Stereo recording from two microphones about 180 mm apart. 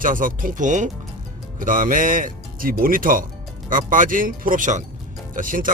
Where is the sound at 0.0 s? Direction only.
50° right (ahead or behind).